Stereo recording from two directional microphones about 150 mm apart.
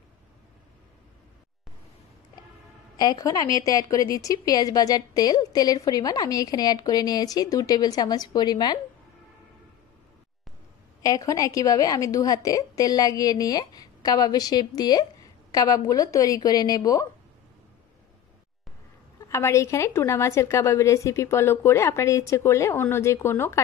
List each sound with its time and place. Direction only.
3.0 s a woman's voice: 25° left (ahead or behind)
11.0 s a woman's voice: 20° left (ahead or behind)
19.2 s a woman's voice: 20° left (ahead or behind)